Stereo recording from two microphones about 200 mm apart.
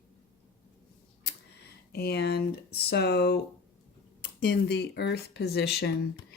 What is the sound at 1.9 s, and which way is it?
Speech, 55° left (ahead or behind).